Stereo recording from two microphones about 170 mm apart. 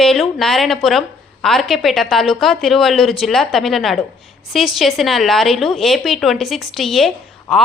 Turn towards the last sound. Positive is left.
turn(degrees=0)  # may be behind; listen again after turning